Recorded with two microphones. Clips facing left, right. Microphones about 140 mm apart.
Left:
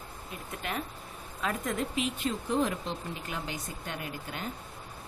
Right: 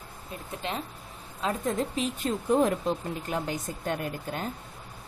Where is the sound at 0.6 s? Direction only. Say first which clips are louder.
Right 2 dB; 25° right (ahead or behind); by 4.5 s 45° right (ahead or behind).